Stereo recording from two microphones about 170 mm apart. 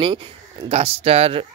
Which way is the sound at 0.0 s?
30° right (ahead or behind).